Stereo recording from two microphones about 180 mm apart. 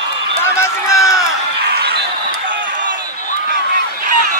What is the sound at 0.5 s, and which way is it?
Run, 15° left (ahead or behind).